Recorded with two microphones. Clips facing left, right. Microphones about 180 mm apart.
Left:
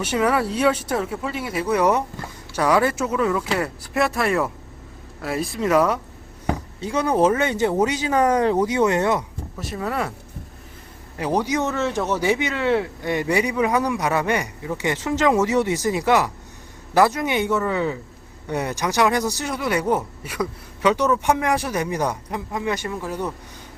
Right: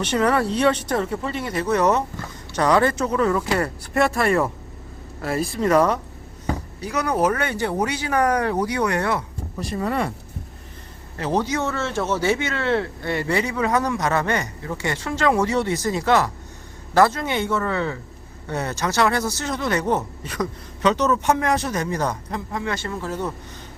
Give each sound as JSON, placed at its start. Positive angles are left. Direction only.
{"t": 0.0, "sound": "a man's voice", "side_deg": 5}
{"t": 6.7, "sound": "speech", "side_deg": 25}
{"t": 9.6, "sound": "speech", "side_deg": 0}
{"t": 11.2, "sound": "a man's voice", "side_deg": 15}